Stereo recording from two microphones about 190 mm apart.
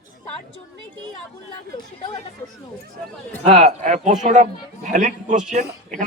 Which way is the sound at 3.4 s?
35° right (ahead or behind).